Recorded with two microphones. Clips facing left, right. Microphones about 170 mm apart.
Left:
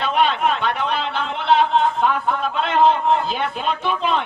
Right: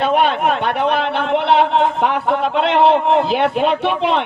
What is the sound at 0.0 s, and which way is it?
A man's voice, 55° right (ahead or behind).